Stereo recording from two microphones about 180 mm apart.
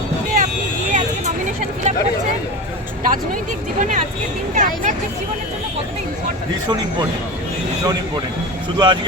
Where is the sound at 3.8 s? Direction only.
45° right (ahead or behind).